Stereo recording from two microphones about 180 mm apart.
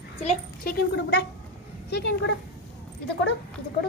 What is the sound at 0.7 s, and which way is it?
A woman's voice, 60° left (ahead or behind).